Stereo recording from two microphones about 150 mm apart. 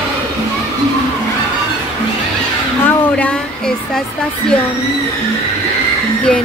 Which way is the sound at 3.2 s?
5° left (ahead or behind).